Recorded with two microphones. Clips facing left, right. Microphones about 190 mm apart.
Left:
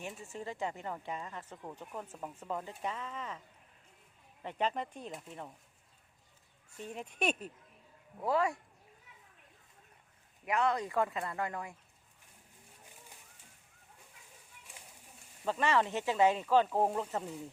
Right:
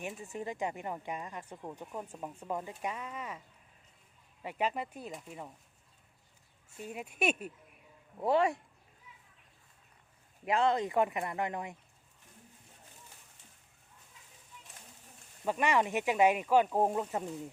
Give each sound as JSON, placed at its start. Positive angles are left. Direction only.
{"t": 0.2, "sound": "speech", "side_deg": -15}
{"t": 4.4, "sound": "speech", "side_deg": -10}
{"t": 6.7, "sound": "speech", "side_deg": -10}
{"t": 8.2, "sound": "speech", "side_deg": -25}
{"t": 10.4, "sound": "speech", "side_deg": -25}
{"t": 15.4, "sound": "speech", "side_deg": -15}